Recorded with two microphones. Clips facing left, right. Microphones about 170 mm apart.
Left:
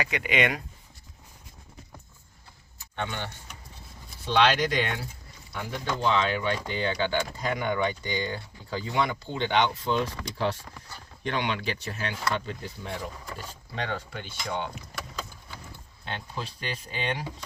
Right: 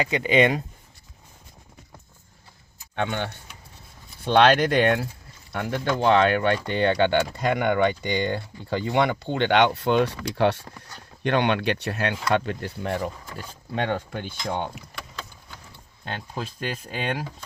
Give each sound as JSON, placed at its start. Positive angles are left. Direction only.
{"t": 0.0, "sound": "speech", "side_deg": -30}
{"t": 2.9, "sound": "speech", "side_deg": -60}
{"t": 13.7, "sound": "speech", "side_deg": -50}
{"t": 14.8, "sound": "a sound", "side_deg": 5}
{"t": 16.0, "sound": "speech", "side_deg": -45}